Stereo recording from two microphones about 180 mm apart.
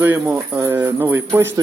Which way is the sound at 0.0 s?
10° right (ahead or behind).